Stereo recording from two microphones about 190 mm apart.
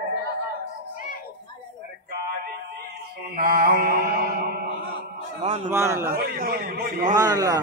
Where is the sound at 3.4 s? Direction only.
50° right (ahead or behind).